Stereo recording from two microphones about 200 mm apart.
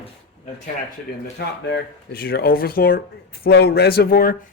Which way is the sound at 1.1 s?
50° left (ahead or behind).